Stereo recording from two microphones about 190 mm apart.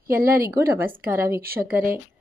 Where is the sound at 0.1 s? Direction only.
50° right (ahead or behind).